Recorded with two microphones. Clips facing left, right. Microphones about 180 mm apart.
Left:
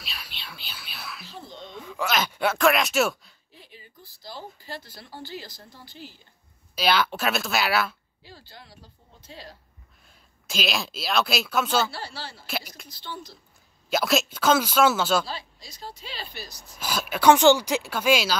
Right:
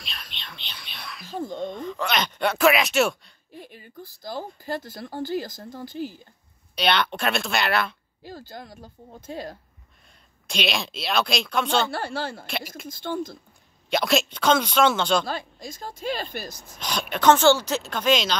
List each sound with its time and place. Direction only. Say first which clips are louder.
0.0 s whispering: even; 5° left (ahead or behind)
1.2 s a sound: right 11 dB; 50° right (ahead or behind)
1.8 s a sound: left 3 dB; 5° left (ahead or behind)
3.5 s speech: right 9 dB; 50° right (ahead or behind)
6.7 s speech: even; 5° left (ahead or behind)
8.2 s speech: right 11 dB; 45° right (ahead or behind)
10.4 s speech: right 1 dB; centre (ahead or behind)
11.9 s speech: right 8 dB; 50° right (ahead or behind)
12.4 s speech: right 1 dB; centre (ahead or behind)
12.8 s speech: right 10 dB; 50° right (ahead or behind)
13.8 s speech: right 1 dB; centre (ahead or behind)
15.2 s speech: right 6 dB; 50° right (ahead or behind)
16.7 s speech: even; 5° left (ahead or behind)